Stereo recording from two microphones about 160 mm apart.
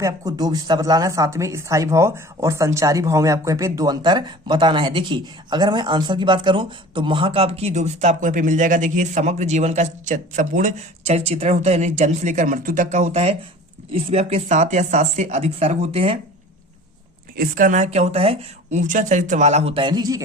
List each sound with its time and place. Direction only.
0.0 s speech: 25° right (ahead or behind)
17.3 s speech: 60° right (ahead or behind); by 20.2 s 25° right (ahead or behind)